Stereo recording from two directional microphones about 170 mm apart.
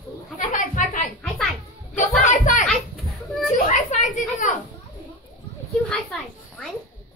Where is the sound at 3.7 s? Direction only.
50° left (ahead or behind).